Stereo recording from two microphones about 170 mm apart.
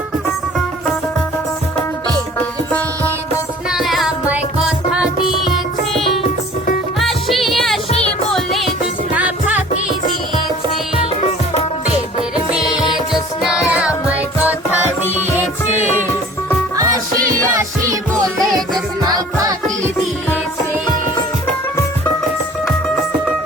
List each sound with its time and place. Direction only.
2.7 s music: 10° left (ahead or behind)
3.7 s music: centre (ahead or behind)
5.9 s music: centre (ahead or behind)
7.9 s music: 35° left (ahead or behind)
8.3 s music: centre (ahead or behind)
13.4 s music: 5° right (ahead or behind)
19.0 s music: 20° right (ahead or behind)